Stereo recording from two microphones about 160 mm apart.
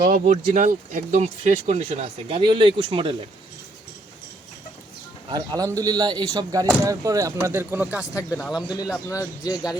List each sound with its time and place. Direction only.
0.0 s speech: 60° right (ahead or behind); by 3.2 s 30° right (ahead or behind)
5.5 s a man's voice: 20° right (ahead or behind)
7.9 s speech: 20° left (ahead or behind)